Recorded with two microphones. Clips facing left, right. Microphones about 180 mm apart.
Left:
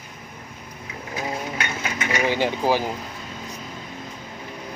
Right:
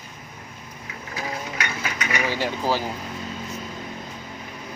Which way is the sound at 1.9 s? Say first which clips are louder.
Left 4 dB; 20° left (ahead or behind).